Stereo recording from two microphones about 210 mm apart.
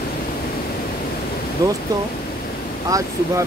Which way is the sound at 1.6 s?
15° right (ahead or behind).